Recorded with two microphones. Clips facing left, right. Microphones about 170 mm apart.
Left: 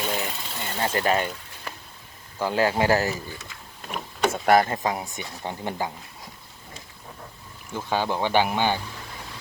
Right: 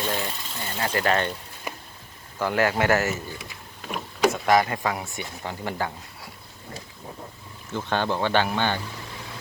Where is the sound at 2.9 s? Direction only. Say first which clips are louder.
Even; 35° left (ahead or behind).